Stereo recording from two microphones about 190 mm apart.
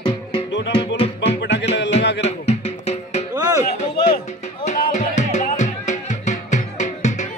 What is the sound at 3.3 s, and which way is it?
Music, 20° right (ahead or behind).